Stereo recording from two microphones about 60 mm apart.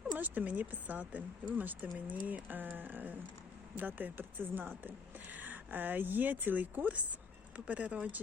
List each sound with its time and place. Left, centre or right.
0.1 s speech: right